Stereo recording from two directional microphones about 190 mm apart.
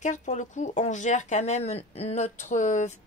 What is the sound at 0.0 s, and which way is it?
Speech, 40° left (ahead or behind).